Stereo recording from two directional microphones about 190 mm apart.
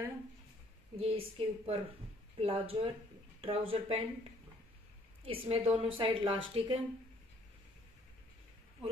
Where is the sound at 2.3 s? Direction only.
30° right (ahead or behind).